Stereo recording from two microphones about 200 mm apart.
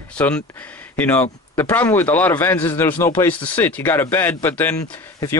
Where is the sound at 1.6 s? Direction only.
10° left (ahead or behind).